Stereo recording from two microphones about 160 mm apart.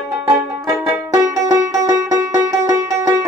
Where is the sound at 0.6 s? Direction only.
20° right (ahead or behind).